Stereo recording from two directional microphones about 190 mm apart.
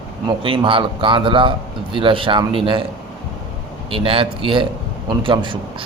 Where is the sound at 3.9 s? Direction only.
30° right (ahead or behind).